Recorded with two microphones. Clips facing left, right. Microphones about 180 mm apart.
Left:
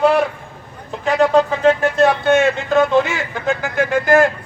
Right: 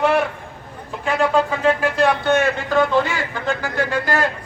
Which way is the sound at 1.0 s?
40° left (ahead or behind).